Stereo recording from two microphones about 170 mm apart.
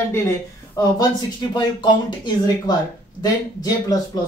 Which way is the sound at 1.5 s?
25° left (ahead or behind).